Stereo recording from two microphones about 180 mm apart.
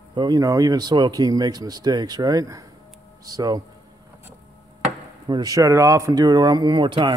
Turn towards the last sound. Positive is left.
turn(degrees=-25)  # may be behind; listen again after turning